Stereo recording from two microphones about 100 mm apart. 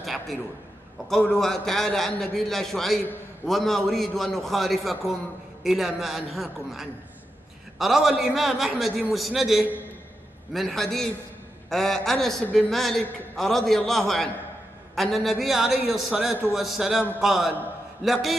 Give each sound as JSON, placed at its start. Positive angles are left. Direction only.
{"t": 0.0, "sound": "a man's voice", "side_deg": 0}